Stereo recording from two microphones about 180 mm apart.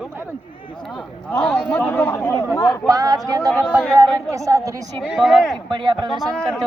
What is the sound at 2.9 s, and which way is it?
Speech, 20° right (ahead or behind).